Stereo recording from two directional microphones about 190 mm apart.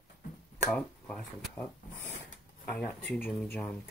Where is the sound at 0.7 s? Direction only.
5° left (ahead or behind).